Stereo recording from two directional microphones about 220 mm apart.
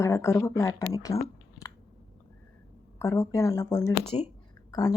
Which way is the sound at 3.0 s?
15° left (ahead or behind).